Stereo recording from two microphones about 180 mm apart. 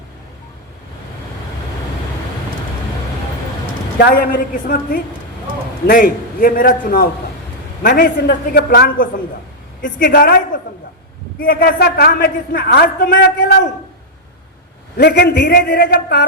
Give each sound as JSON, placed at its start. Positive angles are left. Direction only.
{"t": 3.9, "sound": "a man's voice", "side_deg": 50}
{"t": 14.9, "sound": "a woman's voice", "side_deg": 65}